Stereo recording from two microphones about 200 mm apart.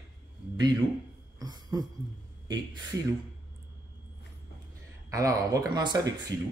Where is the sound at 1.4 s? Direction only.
20° right (ahead or behind).